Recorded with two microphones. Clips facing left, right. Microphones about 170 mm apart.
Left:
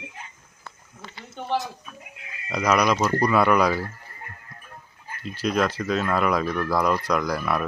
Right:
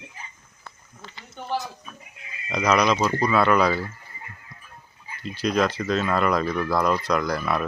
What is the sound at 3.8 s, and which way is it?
Goat, 60° left (ahead or behind).